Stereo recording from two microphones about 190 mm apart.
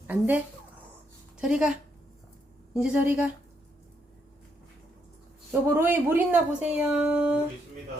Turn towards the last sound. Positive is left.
turn(degrees=-5)  # may be behind; listen again after turning